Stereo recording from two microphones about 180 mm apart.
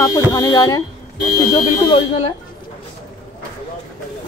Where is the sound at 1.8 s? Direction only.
30° left (ahead or behind).